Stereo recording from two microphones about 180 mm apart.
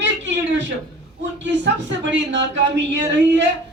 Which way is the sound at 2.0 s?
80° right.